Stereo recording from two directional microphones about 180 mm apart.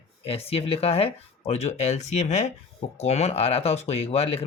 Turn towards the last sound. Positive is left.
turn(degrees=35)  # may be behind; listen again after turning